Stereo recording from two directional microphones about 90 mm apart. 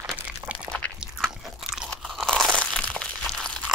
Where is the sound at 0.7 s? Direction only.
15° left (ahead or behind).